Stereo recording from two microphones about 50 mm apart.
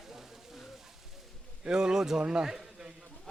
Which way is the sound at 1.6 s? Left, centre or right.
Centre.